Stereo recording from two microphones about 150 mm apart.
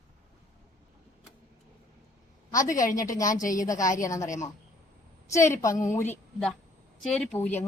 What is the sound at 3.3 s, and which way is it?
Speech, 60° left (ahead or behind).